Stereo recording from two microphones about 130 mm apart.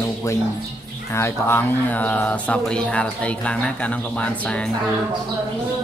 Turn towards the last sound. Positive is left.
turn(degrees=10)  # may be behind; listen again after turning